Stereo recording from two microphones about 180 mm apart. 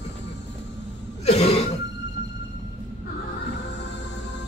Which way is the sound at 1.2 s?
35° left (ahead or behind).